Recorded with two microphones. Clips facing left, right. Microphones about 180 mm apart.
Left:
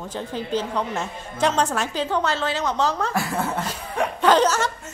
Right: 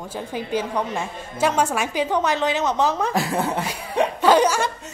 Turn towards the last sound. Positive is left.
turn(degrees=-10)  # may be behind; listen again after turning